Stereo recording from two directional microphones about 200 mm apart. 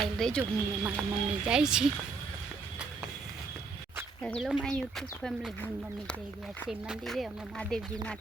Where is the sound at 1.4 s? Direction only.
5° right (ahead or behind).